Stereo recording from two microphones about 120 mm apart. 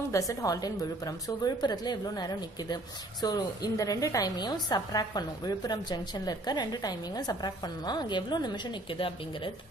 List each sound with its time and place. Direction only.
0.1 s a woman's voice: 25° left (ahead or behind); by 9.5 s 45° left (ahead or behind)